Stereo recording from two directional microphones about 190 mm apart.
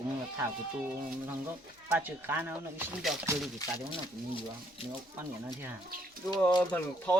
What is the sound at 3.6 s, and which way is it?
Speech, 20° left (ahead or behind).